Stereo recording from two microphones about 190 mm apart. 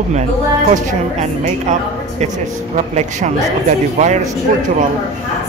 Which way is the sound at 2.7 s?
40° right (ahead or behind).